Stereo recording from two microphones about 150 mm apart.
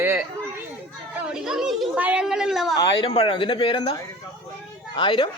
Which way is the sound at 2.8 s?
30° left (ahead or behind).